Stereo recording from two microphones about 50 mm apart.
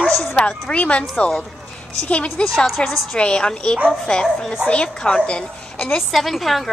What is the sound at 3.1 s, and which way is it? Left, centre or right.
A woman's voice, centre.